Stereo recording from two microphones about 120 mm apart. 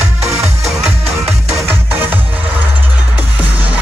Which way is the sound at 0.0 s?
65° right (ahead or behind).